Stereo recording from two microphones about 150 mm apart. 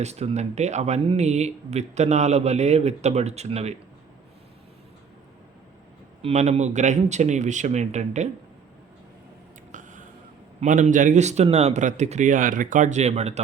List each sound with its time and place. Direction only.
0.0 s speech: 45° right (ahead or behind)
6.2 s speech: 45° right (ahead or behind)
10.6 s speech: 55° right (ahead or behind)